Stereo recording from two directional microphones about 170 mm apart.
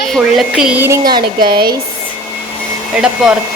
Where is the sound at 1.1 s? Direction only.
25° right (ahead or behind).